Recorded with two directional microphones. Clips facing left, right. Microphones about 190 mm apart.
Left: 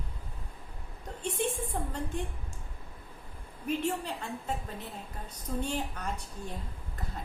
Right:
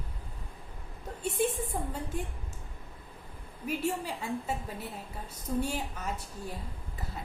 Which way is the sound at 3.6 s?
10° right (ahead or behind).